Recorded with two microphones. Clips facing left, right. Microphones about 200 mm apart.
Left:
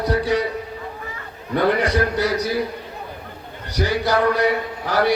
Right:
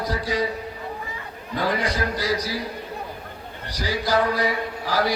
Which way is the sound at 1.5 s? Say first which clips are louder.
Left 6 dB; 65° left (ahead or behind).